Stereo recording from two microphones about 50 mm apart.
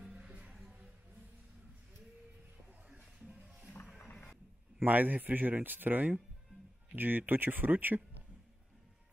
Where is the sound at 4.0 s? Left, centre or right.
Left.